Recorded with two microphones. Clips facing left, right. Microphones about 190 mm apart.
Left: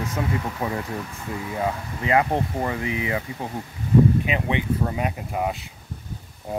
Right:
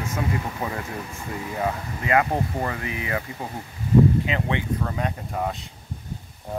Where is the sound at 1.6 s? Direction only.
20° left (ahead or behind).